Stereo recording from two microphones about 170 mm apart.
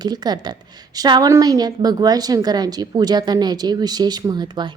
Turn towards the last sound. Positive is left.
turn(degrees=-25)  # may be behind; listen again after turning